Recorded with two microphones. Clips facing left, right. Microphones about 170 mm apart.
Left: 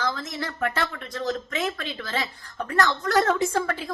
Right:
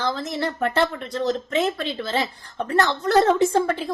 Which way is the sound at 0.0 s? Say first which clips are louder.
Right 5 dB; 30° right (ahead or behind).